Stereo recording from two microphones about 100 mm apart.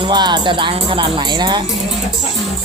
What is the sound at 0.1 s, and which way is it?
Music, 50° right (ahead or behind).